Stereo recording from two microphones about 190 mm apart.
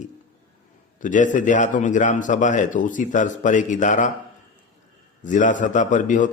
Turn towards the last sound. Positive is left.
turn(degrees=40)  # may be behind; listen again after turning